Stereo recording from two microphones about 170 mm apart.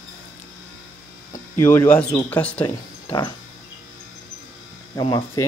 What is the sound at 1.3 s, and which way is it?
Speech, 15° left (ahead or behind).